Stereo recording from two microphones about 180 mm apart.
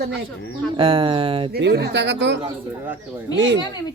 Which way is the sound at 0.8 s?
30° right (ahead or behind).